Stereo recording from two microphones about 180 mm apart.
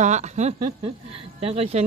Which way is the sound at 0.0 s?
40° right (ahead or behind).